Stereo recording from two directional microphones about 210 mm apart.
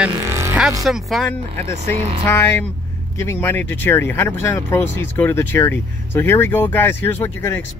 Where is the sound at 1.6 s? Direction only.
30° right (ahead or behind).